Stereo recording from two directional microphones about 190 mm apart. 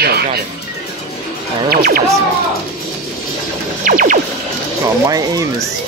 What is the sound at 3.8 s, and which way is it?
Music, 45° right (ahead or behind).